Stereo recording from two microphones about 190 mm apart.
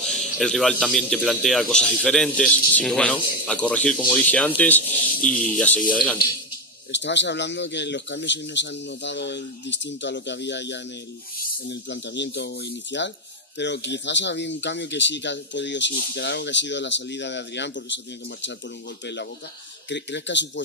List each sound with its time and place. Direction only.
0.0 s a man's voice: centre (ahead or behind)
6.9 s speech: 70° left (ahead or behind)
19.9 s speech: 65° left (ahead or behind)